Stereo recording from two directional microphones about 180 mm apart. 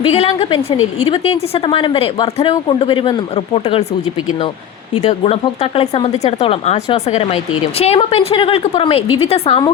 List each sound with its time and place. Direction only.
0.1 s a woman's voice: 35° left (ahead or behind)
5.0 s a woman's voice: 35° left (ahead or behind)